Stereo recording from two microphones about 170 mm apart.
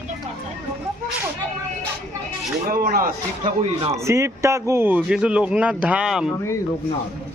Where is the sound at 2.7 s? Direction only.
60° right (ahead or behind).